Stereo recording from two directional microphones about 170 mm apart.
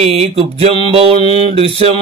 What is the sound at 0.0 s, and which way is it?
Speech, 35° right (ahead or behind).